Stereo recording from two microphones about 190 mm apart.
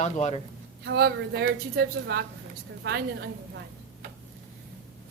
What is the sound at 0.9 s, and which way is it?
A woman's voice, 60° right (ahead or behind).